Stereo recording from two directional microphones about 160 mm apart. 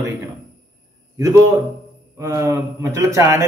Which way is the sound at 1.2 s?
20° right (ahead or behind).